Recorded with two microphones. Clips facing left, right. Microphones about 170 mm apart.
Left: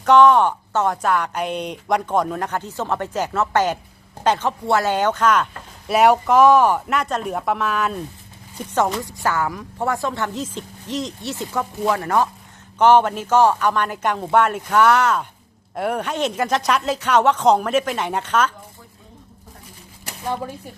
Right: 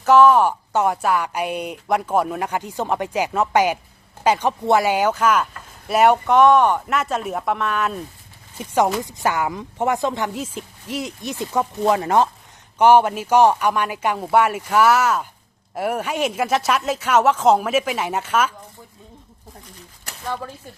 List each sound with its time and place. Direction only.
0.0 s speech: 5° right (ahead or behind); by 12.3 s 20° right (ahead or behind)
12.8 s speech: 10° right (ahead or behind)
20.2 s speech: 15° left (ahead or behind)